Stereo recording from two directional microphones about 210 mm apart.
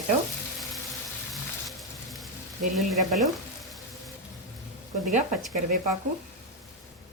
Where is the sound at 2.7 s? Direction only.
Centre (ahead or behind).